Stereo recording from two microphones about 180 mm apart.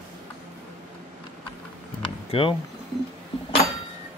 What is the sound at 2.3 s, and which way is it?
Speech, 30° left (ahead or behind).